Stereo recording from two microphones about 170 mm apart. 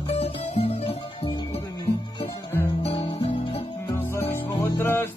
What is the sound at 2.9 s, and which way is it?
Guitar, 30° left (ahead or behind).